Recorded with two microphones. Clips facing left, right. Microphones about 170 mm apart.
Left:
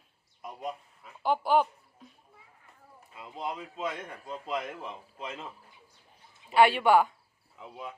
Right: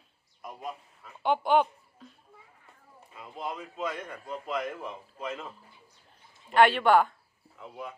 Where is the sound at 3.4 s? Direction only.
25° left (ahead or behind).